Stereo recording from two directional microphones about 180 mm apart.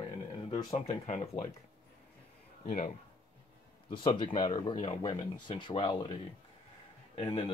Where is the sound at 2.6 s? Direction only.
40° left (ahead or behind).